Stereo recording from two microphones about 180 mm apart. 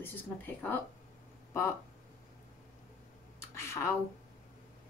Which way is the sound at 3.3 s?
15° left (ahead or behind).